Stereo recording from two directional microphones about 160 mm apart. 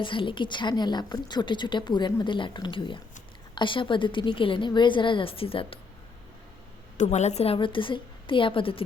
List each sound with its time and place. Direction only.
0.0 s a woman's voice: 30° left (ahead or behind)
6.9 s a woman's voice: 45° left (ahead or behind)